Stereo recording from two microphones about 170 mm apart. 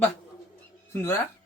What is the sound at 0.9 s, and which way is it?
Speech, 15° left (ahead or behind).